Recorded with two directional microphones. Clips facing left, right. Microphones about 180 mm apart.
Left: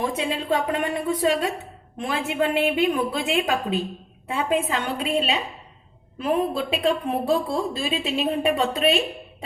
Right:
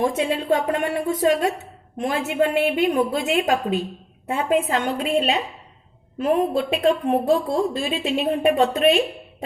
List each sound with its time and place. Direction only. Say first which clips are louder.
0.0 s a woman's voice: right 4 dB; 45° right (ahead or behind)